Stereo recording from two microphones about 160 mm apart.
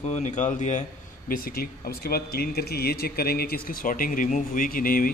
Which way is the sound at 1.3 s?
65° left (ahead or behind).